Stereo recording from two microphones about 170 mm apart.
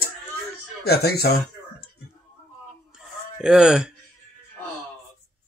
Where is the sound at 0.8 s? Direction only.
70° left (ahead or behind).